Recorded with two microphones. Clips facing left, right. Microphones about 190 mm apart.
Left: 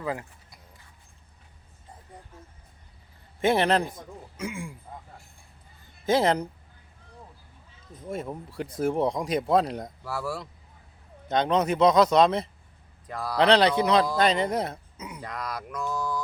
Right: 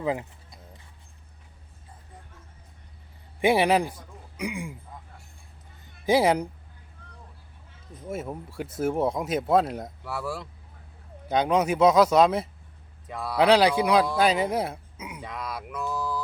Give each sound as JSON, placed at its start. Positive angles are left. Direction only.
{"t": 0.0, "sound": "a sound", "side_deg": -20}
{"t": 3.4, "sound": "a man's voice", "side_deg": -10}
{"t": 6.1, "sound": "speech", "side_deg": -10}
{"t": 8.0, "sound": "speech", "side_deg": -5}
{"t": 15.7, "sound": "mantra", "side_deg": -5}